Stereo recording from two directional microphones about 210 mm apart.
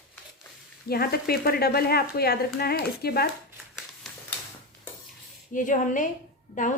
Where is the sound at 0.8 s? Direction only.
45° left (ahead or behind).